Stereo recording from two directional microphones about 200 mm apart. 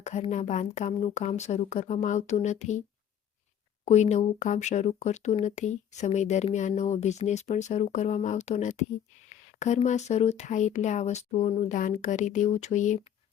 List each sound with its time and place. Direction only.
0.0 s speech: 35° left (ahead or behind)
3.8 s speech: 35° left (ahead or behind)